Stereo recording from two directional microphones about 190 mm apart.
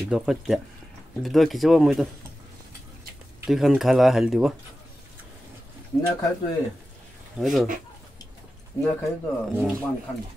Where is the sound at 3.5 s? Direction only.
Centre (ahead or behind).